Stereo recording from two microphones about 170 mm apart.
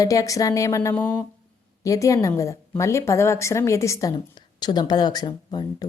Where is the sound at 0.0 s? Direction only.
20° left (ahead or behind).